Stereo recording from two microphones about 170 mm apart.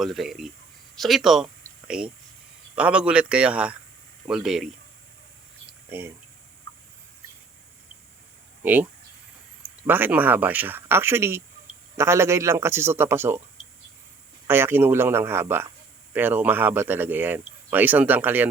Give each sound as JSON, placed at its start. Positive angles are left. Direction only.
{"t": 0.0, "sound": "speech", "side_deg": 0}
{"t": 5.9, "sound": "speech", "side_deg": -10}
{"t": 8.6, "sound": "speech", "side_deg": -10}
{"t": 14.4, "sound": "speech", "side_deg": -15}